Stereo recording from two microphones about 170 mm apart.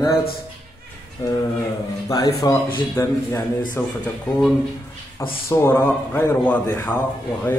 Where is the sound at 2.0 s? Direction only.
30° left (ahead or behind).